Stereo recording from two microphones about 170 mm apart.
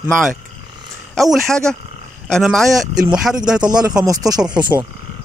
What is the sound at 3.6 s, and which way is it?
Speech, 25° right (ahead or behind).